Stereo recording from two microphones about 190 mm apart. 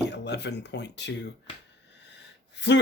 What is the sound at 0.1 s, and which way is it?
Speech, 65° left (ahead or behind).